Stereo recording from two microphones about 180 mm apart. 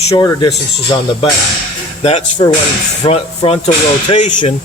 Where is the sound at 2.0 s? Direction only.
35° left (ahead or behind).